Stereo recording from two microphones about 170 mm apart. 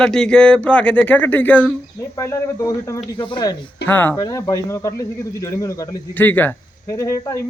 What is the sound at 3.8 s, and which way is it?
A man's voice, 10° left (ahead or behind).